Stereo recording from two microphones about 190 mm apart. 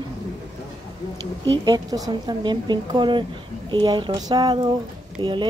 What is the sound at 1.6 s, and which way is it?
Speech, 20° right (ahead or behind).